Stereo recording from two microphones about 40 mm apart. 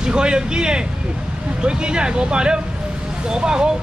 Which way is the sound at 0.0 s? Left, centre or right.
Right.